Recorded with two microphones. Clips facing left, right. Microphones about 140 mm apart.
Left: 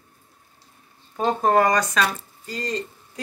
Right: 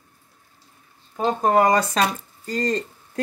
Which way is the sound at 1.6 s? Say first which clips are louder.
Right 2 dB; 30° right (ahead or behind).